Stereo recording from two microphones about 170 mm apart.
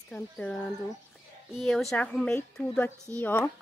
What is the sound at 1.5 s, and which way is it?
Speech, centre (ahead or behind).